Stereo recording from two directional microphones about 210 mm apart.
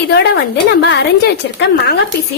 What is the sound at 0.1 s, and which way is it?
A woman's voice, 50° left (ahead or behind).